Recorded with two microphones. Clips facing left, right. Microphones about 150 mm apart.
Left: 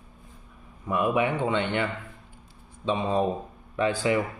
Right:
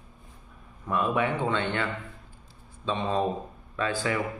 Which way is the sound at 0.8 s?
15° left (ahead or behind).